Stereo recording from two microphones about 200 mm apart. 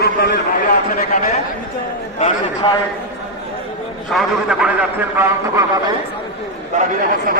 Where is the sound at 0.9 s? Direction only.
35° left (ahead or behind).